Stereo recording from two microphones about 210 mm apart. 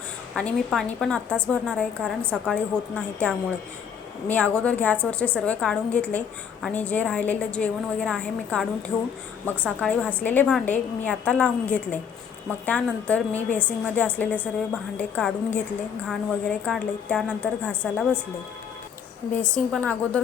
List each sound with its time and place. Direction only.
0.3 s a woman's voice: 5° left (ahead or behind)
19.3 s a woman's voice: 5° left (ahead or behind)